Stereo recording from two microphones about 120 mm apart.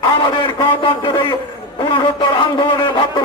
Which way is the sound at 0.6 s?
45° left (ahead or behind).